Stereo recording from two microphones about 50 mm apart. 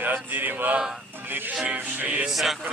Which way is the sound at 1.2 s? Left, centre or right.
Right.